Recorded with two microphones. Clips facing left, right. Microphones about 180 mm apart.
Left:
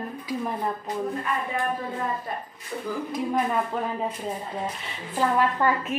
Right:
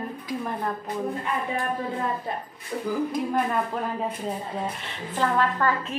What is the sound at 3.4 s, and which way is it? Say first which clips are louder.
Speech: left 2 dB; centre (ahead or behind).